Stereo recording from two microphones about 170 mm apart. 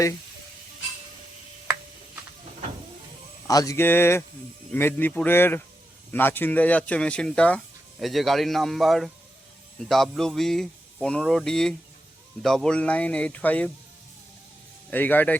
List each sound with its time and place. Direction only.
3.4 s speech: 20° left (ahead or behind)
14.8 s speech: 10° left (ahead or behind)